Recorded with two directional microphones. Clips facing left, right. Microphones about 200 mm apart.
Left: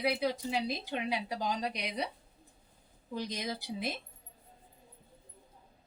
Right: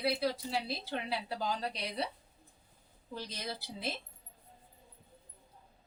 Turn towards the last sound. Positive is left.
turn(degrees=15)  # may be behind; listen again after turning